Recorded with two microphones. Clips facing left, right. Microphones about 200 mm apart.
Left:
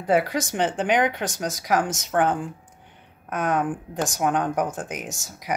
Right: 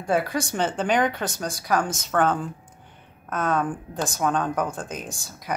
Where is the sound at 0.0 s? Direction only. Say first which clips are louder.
Left 2 dB; 20° left (ahead or behind).